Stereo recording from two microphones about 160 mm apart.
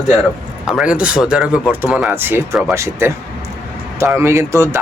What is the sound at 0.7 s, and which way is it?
Speech, 5° right (ahead or behind).